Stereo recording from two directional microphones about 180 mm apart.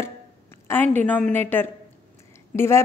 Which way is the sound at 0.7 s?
10° left (ahead or behind).